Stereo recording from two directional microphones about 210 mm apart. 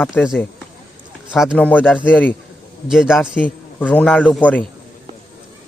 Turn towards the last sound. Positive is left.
turn(degrees=5)  # may be behind; listen again after turning